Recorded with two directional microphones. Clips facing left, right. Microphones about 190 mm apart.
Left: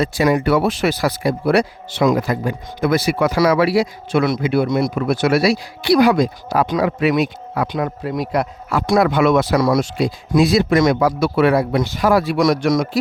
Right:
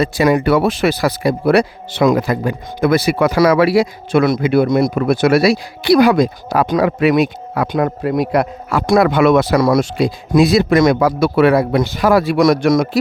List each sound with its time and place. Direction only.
0.0 s speech: 70° right (ahead or behind); by 4.4 s 50° right (ahead or behind)
4.4 s a man's voice: 60° right (ahead or behind)
4.7 s a man's voice: 50° right (ahead or behind); by 7.7 s 65° right (ahead or behind)
7.7 s a man's voice: 50° right (ahead or behind)